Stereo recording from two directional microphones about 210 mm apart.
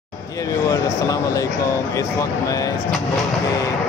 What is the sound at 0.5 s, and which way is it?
Speech, 15° left (ahead or behind).